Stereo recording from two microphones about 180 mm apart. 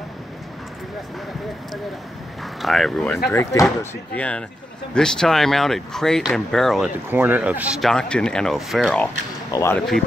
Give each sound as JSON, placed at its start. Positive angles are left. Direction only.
{"t": 2.6, "sound": "speech", "side_deg": 0}
{"t": 3.3, "sound": "speech", "side_deg": 15}
{"t": 7.1, "sound": "speech", "side_deg": -10}
{"t": 9.5, "sound": "speech", "side_deg": 15}
{"t": 9.8, "sound": "speech", "side_deg": 0}